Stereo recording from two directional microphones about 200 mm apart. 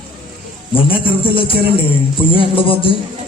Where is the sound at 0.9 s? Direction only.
25° left (ahead or behind).